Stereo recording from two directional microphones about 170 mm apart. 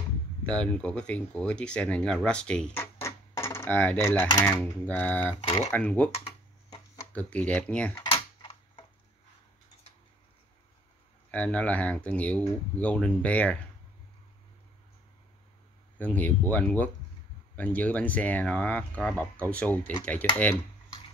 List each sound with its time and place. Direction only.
0.5 s speech: 5° left (ahead or behind)
4.3 s speech: 20° left (ahead or behind)
4.8 s speech: 10° left (ahead or behind)
5.4 s speech: 35° left (ahead or behind)
5.7 s speech: 10° left (ahead or behind)
7.1 s speech: 10° left (ahead or behind)
8.0 s typing: 30° left (ahead or behind)
11.3 s speech: 10° left (ahead or behind)
16.0 s speech: 10° left (ahead or behind)